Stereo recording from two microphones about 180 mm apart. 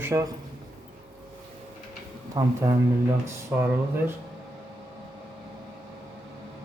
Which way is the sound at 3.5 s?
15° right (ahead or behind).